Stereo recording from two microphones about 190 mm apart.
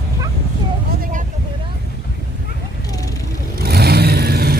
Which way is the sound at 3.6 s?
55° right (ahead or behind).